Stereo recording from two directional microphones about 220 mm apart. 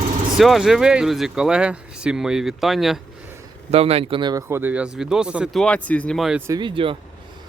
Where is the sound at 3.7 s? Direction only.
25° right (ahead or behind); by 6.4 s centre (ahead or behind).